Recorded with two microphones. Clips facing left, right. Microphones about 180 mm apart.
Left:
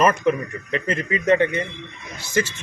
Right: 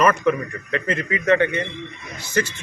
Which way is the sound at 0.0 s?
25° left (ahead or behind).